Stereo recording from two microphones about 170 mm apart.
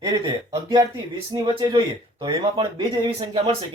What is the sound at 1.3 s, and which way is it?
Speech, 25° right (ahead or behind).